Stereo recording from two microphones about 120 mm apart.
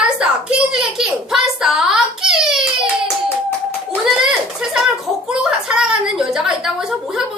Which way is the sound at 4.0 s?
5° right (ahead or behind).